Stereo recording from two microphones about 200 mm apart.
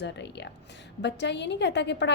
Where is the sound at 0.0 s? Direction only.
60° left (ahead or behind).